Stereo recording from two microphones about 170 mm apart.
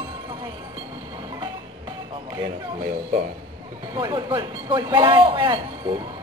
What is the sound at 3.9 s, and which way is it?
Speech, 25° right (ahead or behind).